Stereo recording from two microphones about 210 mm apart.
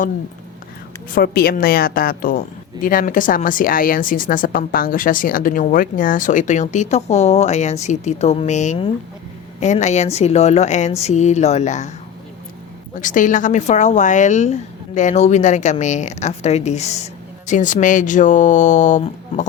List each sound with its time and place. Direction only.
1.1 s a woman's voice: 45° left (ahead or behind)
12.9 s a woman's voice: 40° left (ahead or behind)